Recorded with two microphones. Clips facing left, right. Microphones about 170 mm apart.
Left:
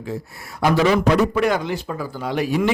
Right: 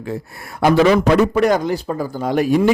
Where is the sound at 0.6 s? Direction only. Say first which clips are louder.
Right 4 dB; 60° right (ahead or behind).